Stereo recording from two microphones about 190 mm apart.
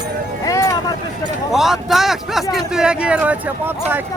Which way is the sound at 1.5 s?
Centre (ahead or behind).